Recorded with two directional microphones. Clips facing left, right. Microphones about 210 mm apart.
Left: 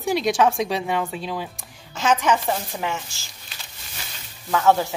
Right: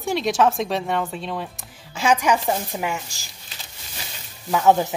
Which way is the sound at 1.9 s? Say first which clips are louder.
Right 1 dB; 10° right (ahead or behind).